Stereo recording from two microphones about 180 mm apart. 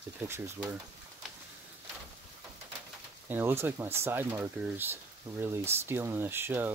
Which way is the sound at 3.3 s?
10° right (ahead or behind).